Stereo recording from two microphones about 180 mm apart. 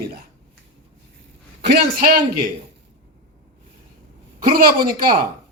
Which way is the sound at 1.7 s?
55° right (ahead or behind).